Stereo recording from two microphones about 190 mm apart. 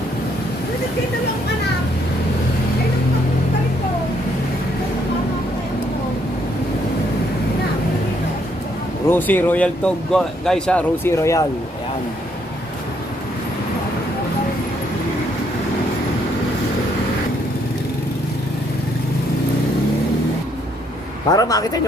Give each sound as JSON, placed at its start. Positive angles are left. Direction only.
{"t": 9.0, "sound": "speech", "side_deg": 10}
{"t": 21.2, "sound": "a man's voice", "side_deg": 20}